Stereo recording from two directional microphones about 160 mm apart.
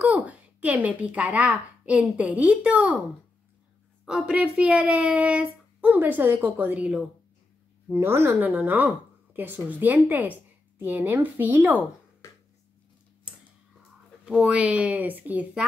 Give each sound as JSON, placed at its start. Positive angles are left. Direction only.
{"t": 0.1, "sound": "speech", "side_deg": -10}
{"t": 4.0, "sound": "a woman's voice", "side_deg": -5}
{"t": 14.2, "sound": "speech", "side_deg": -5}